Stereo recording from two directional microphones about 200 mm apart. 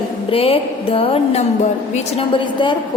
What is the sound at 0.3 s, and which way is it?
A woman's voice, 30° left (ahead or behind).